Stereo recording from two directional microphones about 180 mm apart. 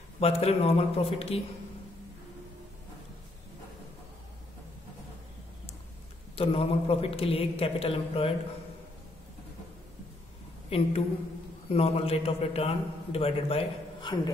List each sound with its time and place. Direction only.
0.2 s a man's voice: 35° left (ahead or behind)
6.3 s a man's voice: 30° left (ahead or behind)
10.7 s a man's voice: 30° left (ahead or behind)